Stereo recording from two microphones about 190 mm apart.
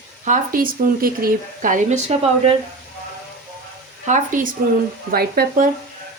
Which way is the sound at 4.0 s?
45° right (ahead or behind).